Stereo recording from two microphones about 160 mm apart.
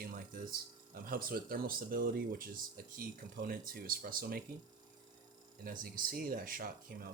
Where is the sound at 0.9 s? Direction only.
65° right (ahead or behind).